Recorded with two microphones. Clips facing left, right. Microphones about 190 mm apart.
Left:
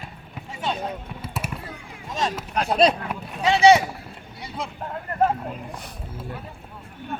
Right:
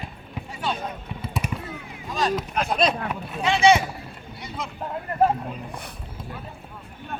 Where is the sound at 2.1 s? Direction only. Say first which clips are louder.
Right 2 dB; 25° left (ahead or behind).